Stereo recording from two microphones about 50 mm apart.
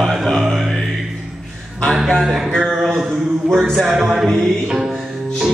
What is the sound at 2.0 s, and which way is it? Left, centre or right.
Music, centre.